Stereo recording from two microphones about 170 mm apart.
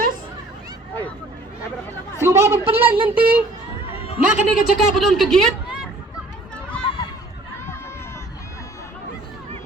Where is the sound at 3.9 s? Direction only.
35° left (ahead or behind).